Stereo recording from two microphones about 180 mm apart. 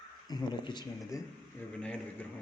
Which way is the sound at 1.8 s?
5° left (ahead or behind).